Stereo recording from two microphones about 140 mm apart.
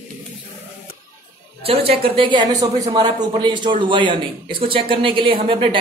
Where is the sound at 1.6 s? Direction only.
45° right (ahead or behind).